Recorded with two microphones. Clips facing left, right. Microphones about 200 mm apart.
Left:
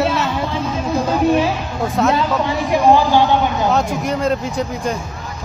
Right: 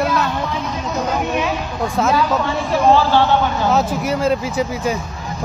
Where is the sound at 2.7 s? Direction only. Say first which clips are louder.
Left 1 dB; 15° left (ahead or behind).